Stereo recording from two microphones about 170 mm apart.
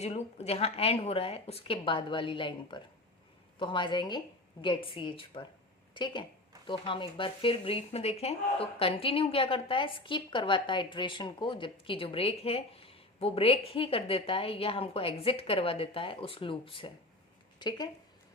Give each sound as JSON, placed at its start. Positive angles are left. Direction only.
{"t": 0.0, "sound": "a woman's voice", "side_deg": 35}